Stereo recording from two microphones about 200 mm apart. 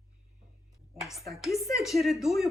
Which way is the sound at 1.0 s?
Centre (ahead or behind).